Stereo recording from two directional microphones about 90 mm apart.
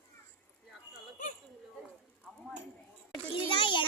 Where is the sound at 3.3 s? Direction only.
70° left (ahead or behind).